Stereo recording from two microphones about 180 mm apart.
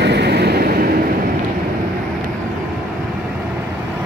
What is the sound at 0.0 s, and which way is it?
Vehicle, 70° right (ahead or behind).